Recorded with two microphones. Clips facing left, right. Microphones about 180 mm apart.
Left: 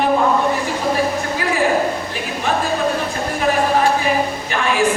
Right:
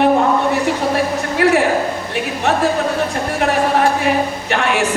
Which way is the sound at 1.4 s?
70° right (ahead or behind).